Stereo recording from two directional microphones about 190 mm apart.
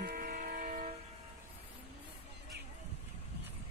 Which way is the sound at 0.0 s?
55° right (ahead or behind).